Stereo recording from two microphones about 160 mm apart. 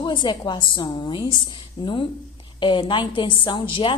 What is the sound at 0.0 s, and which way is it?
A woman's voice, 30° left (ahead or behind).